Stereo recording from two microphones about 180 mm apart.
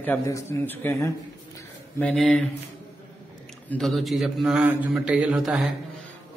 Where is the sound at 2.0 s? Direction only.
Centre (ahead or behind).